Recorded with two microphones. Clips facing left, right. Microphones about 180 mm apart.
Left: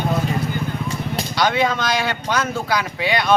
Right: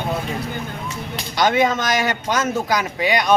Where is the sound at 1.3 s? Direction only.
20° right (ahead or behind).